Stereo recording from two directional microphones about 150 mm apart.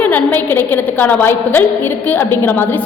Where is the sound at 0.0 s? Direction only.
10° left (ahead or behind).